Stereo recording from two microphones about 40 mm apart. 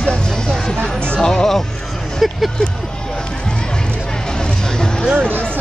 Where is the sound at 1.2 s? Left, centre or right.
Centre.